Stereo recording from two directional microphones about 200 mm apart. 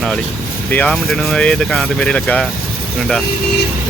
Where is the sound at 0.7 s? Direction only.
5° left (ahead or behind).